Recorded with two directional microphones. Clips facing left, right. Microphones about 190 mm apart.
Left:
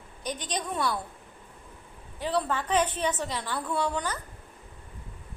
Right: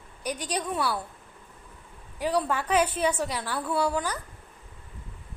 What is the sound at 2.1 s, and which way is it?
A woman's voice, 10° right (ahead or behind).